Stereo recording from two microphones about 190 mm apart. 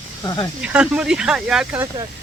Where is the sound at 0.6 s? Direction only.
5° right (ahead or behind).